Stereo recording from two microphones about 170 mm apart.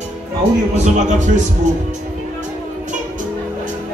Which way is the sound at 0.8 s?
45° right (ahead or behind).